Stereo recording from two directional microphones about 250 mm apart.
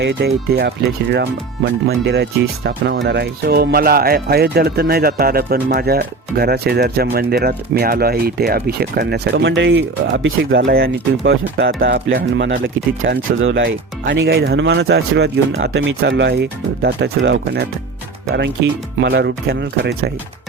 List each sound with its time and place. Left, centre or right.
0.0 s speech: right
1.9 s speech: right